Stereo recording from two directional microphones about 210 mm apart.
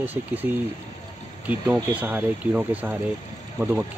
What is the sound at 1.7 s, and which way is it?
Speech, 10° right (ahead or behind).